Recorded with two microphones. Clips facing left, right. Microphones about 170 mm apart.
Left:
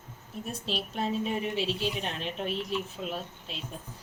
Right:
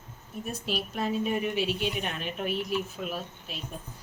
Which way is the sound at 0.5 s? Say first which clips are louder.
Right 1 dB; 25° left (ahead or behind).